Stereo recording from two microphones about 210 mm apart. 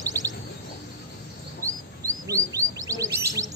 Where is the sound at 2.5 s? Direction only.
15° right (ahead or behind).